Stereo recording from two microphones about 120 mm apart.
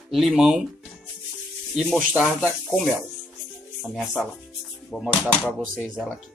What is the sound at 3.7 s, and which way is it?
Speech, centre (ahead or behind).